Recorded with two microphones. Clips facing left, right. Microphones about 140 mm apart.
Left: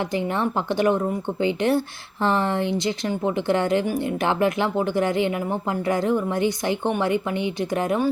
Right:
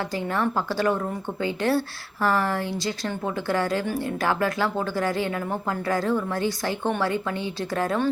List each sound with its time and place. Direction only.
0.1 s speech: 20° left (ahead or behind)